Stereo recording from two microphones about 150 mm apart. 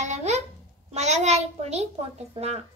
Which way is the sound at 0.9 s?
50° right (ahead or behind).